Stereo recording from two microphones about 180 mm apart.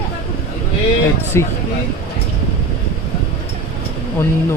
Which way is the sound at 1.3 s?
15° left (ahead or behind).